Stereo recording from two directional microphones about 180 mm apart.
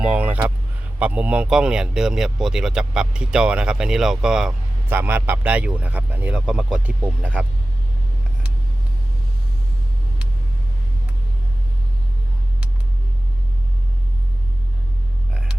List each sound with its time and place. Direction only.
0.0 s speech: 10° right (ahead or behind)